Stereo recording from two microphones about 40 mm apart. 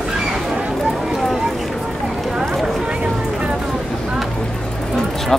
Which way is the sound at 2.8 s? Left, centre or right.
Right.